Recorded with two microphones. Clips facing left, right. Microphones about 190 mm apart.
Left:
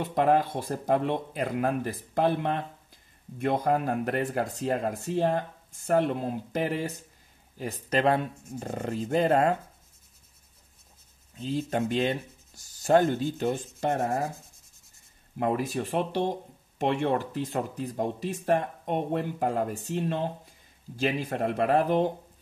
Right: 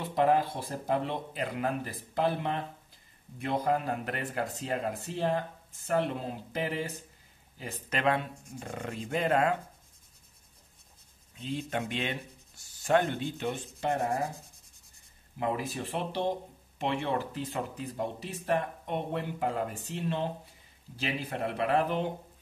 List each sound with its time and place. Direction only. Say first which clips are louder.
0.0 s speech: left 2 dB; 50° left (ahead or behind)
11.3 s speech: left 5 dB; 40° left (ahead or behind)
15.3 s speech: left 5 dB; 50° left (ahead or behind)